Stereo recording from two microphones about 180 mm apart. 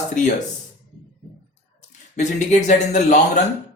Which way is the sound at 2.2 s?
40° left (ahead or behind).